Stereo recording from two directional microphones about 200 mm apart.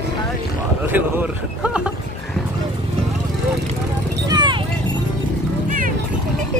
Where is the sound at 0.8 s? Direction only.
10° right (ahead or behind).